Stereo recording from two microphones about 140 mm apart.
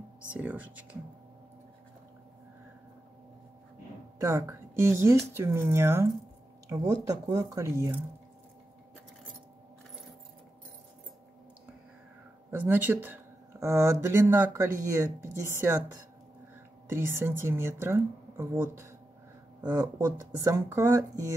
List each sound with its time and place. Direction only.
0.3 s speech: 10° right (ahead or behind)
4.2 s speech: 25° right (ahead or behind)
12.4 s speech: 15° right (ahead or behind)